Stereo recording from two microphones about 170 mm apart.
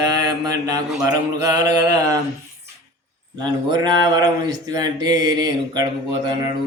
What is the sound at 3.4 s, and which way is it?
Speech, 25° right (ahead or behind).